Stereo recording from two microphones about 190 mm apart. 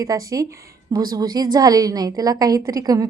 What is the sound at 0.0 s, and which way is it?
A woman's voice, 20° right (ahead or behind).